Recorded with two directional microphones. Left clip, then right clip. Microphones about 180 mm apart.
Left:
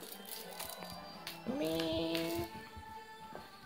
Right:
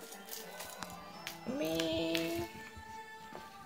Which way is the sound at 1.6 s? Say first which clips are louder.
Right 1 dB; 10° right (ahead or behind).